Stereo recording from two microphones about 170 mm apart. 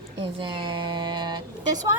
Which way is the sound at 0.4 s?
30° right (ahead or behind).